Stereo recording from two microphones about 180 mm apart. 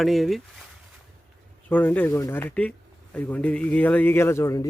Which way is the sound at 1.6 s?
10° left (ahead or behind).